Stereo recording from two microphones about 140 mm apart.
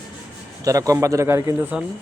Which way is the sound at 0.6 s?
25° right (ahead or behind).